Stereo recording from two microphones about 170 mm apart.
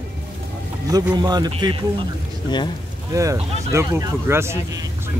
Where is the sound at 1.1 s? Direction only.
25° right (ahead or behind).